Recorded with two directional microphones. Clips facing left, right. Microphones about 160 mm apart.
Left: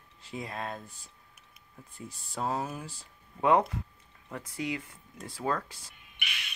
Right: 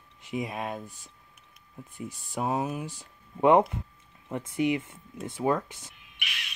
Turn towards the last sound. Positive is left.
turn(degrees=0)  # may be behind; listen again after turning